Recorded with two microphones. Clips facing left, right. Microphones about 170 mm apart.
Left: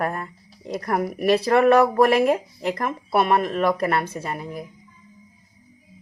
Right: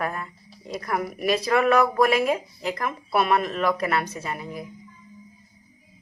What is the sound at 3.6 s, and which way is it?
Speech, 30° left (ahead or behind).